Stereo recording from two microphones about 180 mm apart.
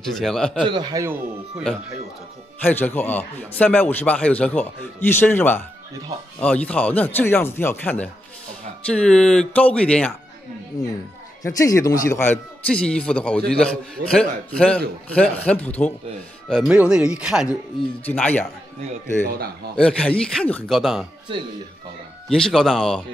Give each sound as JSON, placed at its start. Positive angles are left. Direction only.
{"t": 0.0, "sound": "a man's voice", "side_deg": 0}
{"t": 0.7, "sound": "a man's voice", "side_deg": -25}
{"t": 2.6, "sound": "a man's voice", "side_deg": 10}
{"t": 10.7, "sound": "a man's voice", "side_deg": 20}
{"t": 18.0, "sound": "a man's voice", "side_deg": 10}
{"t": 19.2, "sound": "a man's voice", "side_deg": -55}
{"t": 19.8, "sound": "a man's voice", "side_deg": 5}
{"t": 22.3, "sound": "a man's voice", "side_deg": 0}